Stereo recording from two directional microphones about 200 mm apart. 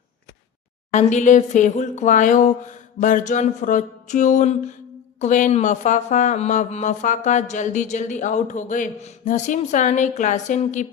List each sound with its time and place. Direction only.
0.9 s speech: 35° left (ahead or behind)